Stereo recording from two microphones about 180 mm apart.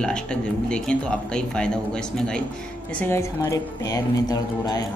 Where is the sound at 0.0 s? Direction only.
5° left (ahead or behind).